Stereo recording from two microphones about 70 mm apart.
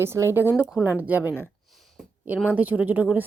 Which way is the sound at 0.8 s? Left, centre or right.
Right.